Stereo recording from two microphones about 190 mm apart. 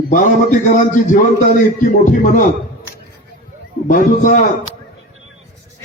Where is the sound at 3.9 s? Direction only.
45° left (ahead or behind).